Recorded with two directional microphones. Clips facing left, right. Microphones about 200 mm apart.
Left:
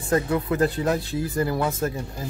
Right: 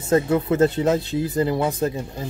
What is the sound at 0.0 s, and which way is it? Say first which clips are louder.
Speech: right 4 dB; 25° right (ahead or behind).